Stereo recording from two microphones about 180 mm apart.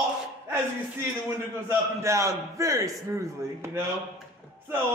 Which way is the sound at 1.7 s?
15° right (ahead or behind).